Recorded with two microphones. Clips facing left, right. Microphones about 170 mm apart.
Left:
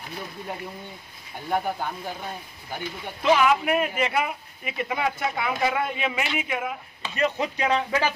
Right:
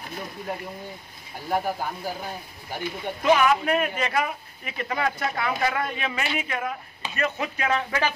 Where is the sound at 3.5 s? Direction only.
15° left (ahead or behind).